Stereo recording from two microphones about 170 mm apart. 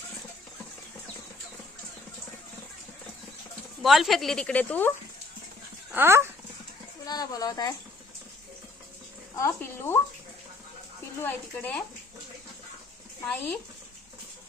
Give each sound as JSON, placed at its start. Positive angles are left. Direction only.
{"t": 3.8, "sound": "speech", "side_deg": 0}
{"t": 5.9, "sound": "speech", "side_deg": -15}
{"t": 7.0, "sound": "speech", "side_deg": 20}
{"t": 9.3, "sound": "speech", "side_deg": 15}
{"t": 11.2, "sound": "speech", "side_deg": 10}
{"t": 13.2, "sound": "speech", "side_deg": 10}